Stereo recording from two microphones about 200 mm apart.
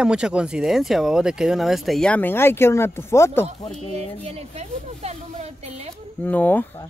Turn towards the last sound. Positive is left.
turn(degrees=10)  # may be behind; listen again after turning